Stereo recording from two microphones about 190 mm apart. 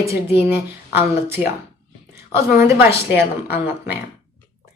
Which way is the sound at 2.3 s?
15° right (ahead or behind).